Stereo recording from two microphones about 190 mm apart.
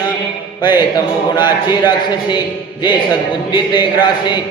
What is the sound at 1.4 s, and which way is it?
Chant, 25° left (ahead or behind).